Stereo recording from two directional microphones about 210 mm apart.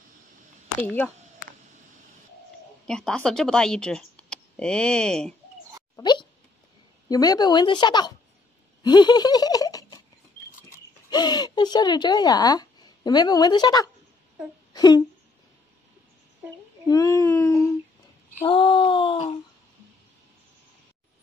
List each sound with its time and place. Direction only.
0.8 s speech: 10° left (ahead or behind)
2.9 s speech: 5° left (ahead or behind)
5.9 s a sound: 20° left (ahead or behind)
7.1 s a woman's voice: 20° left (ahead or behind)
8.8 s a sound: 20° left (ahead or behind)
11.1 s speech: 20° left (ahead or behind)
14.7 s a sound: 20° left (ahead or behind)
16.8 s speech: 15° left (ahead or behind)
18.4 s a woman's voice: 25° left (ahead or behind)